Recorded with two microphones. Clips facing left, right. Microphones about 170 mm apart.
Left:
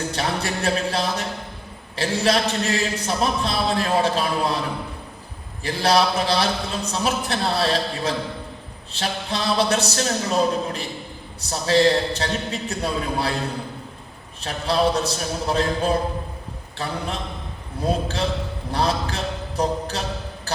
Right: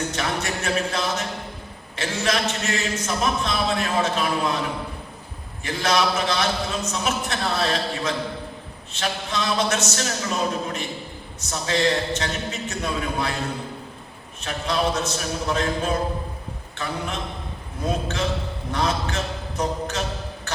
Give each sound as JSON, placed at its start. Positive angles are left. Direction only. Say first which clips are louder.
{"t": 0.1, "sound": "speech", "louder": "left 1 dB", "side_deg": 35}
{"t": 5.6, "sound": "speech", "louder": "left 3 dB", "side_deg": 35}
{"t": 14.4, "sound": "speech", "louder": "left 3 dB", "side_deg": 35}